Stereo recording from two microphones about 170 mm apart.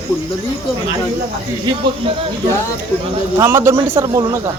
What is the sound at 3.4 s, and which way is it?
Speech, 15° right (ahead or behind).